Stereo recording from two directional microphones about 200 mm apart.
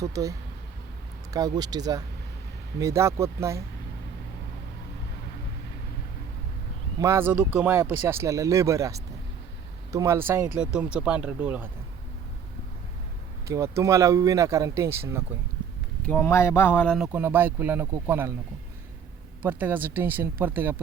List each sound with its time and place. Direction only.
0.0 s speech: 15° right (ahead or behind)
7.0 s speech: 10° right (ahead or behind)
13.5 s speech: 15° right (ahead or behind)
16.0 s speech: 10° left (ahead or behind); by 18.3 s 10° right (ahead or behind)
19.4 s speech: 10° right (ahead or behind)